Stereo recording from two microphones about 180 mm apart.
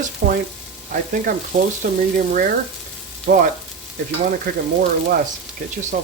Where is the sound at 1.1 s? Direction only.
50° right (ahead or behind).